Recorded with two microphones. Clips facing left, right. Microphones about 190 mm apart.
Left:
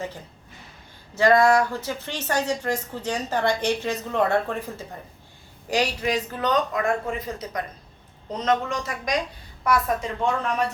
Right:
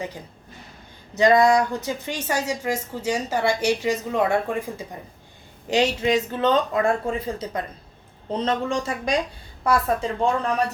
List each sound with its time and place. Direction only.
1.1 s speech: 20° right (ahead or behind)
5.6 s speech: 25° right (ahead or behind)